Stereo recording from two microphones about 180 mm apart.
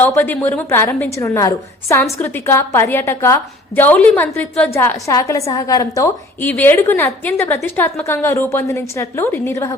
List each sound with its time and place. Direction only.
0.0 s a woman's voice: 10° left (ahead or behind)